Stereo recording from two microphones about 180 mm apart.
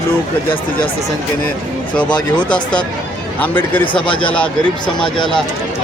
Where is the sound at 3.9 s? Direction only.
30° left (ahead or behind).